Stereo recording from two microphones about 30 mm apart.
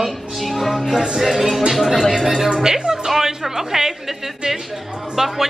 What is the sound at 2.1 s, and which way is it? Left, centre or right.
Speech, centre.